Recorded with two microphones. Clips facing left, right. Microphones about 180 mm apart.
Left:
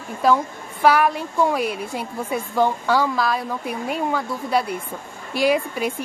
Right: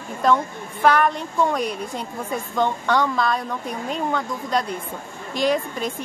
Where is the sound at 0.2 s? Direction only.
5° left (ahead or behind).